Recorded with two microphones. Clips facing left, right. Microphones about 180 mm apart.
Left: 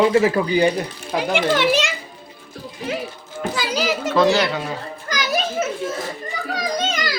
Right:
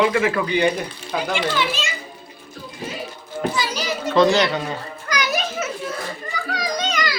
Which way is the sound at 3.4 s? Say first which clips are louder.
Left 1 dB; 90° left.